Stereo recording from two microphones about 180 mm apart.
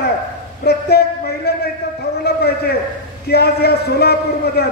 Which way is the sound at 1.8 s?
60° left (ahead or behind).